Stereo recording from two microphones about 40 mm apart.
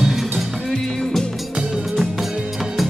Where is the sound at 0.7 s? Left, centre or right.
Centre.